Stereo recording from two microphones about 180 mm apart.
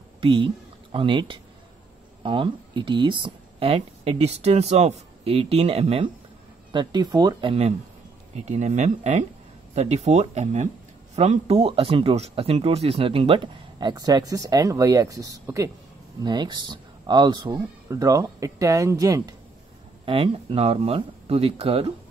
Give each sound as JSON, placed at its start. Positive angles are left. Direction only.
{"t": 0.2, "sound": "speech", "side_deg": -25}
{"t": 20.1, "sound": "speech", "side_deg": -30}